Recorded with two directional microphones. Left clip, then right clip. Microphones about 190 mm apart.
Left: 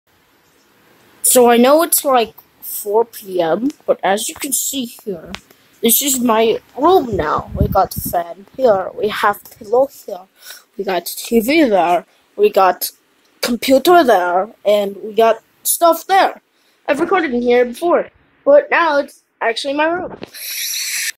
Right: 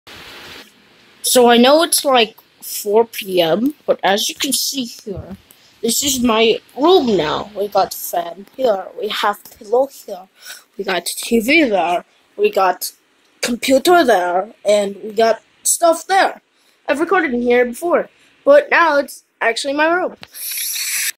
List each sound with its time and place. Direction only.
1.2 s speech: 5° left (ahead or behind)
2.0 s a woman's voice: 5° right (ahead or behind)
6.2 s speech: 5° right (ahead or behind)
8.6 s speech: 30° left (ahead or behind)
10.4 s speech: 10° left (ahead or behind)
11.6 s speech: 25° left (ahead or behind)
13.4 s a woman's voice: 15° left (ahead or behind)